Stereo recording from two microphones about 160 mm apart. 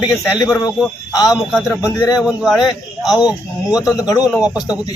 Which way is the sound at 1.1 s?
20° left (ahead or behind).